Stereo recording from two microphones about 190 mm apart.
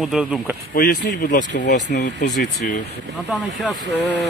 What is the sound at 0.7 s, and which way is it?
Speech, 50° left (ahead or behind).